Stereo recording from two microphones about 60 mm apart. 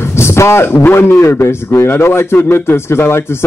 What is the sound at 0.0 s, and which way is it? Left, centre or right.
A man's voice, left.